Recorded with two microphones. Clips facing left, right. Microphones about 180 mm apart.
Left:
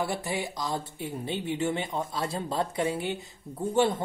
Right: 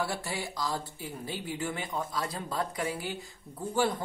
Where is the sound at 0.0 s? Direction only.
20° left (ahead or behind).